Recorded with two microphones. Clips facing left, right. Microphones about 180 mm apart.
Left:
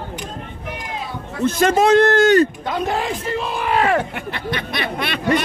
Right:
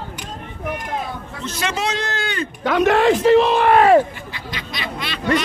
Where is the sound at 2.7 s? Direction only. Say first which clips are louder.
Right 7 dB; 80° right.